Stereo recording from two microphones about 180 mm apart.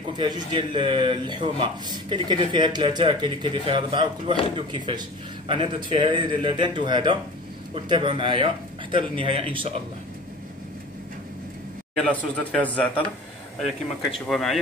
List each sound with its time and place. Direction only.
0.2 s speech: 25° right (ahead or behind)
11.9 s speech: 5° left (ahead or behind)
14.2 s speech: centre (ahead or behind)